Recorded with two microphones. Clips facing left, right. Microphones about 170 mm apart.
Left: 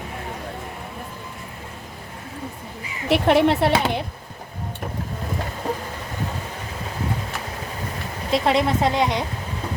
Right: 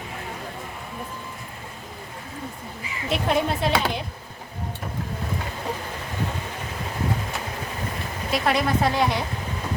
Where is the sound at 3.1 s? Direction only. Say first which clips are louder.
Left 7 dB; 75° left (ahead or behind).